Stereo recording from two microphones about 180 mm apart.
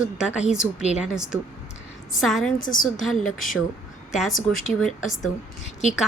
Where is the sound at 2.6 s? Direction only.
50° left (ahead or behind).